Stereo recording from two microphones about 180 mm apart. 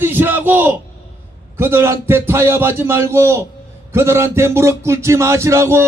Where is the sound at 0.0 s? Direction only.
10° right (ahead or behind).